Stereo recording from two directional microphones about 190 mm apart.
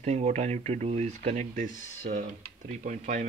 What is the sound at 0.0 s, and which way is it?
Speech, 35° right (ahead or behind).